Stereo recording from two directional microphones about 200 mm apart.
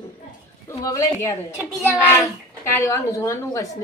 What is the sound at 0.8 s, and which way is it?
A child's voice, 15° left (ahead or behind).